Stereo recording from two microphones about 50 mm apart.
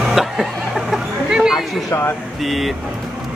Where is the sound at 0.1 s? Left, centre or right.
Centre.